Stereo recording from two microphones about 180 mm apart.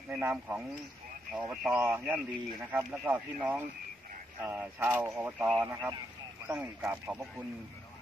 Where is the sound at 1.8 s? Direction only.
15° right (ahead or behind).